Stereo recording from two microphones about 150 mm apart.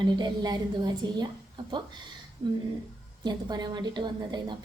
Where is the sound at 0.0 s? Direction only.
25° right (ahead or behind).